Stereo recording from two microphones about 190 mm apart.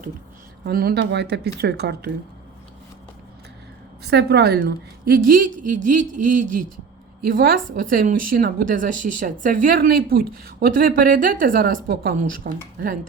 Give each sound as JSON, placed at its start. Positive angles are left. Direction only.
{"t": 0.6, "sound": "speech", "side_deg": -55}
{"t": 4.0, "sound": "speech", "side_deg": -60}